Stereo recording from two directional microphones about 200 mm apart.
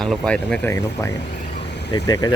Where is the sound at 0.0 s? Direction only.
5° left (ahead or behind).